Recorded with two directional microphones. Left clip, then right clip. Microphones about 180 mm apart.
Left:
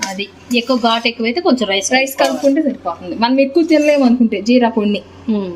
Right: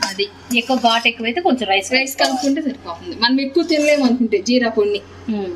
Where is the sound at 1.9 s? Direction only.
55° left (ahead or behind).